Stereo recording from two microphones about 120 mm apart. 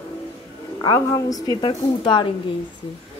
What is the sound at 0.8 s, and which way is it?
Speech, 30° left (ahead or behind).